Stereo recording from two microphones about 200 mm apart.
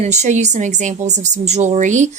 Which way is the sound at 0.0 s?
35° right (ahead or behind).